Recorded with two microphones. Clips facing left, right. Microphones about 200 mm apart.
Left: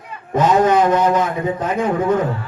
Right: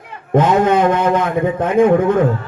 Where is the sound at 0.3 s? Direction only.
55° right (ahead or behind).